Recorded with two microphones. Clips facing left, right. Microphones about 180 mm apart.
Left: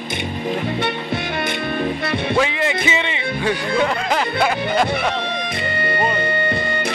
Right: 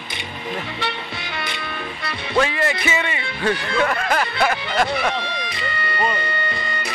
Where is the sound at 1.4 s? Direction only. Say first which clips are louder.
Left 9 dB; 55° left (ahead or behind).